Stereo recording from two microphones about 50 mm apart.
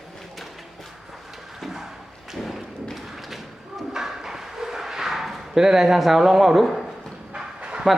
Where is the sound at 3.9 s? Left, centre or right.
Centre.